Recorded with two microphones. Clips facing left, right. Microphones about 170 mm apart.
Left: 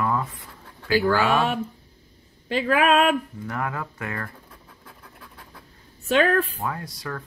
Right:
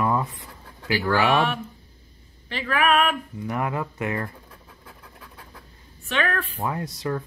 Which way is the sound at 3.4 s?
15° right (ahead or behind).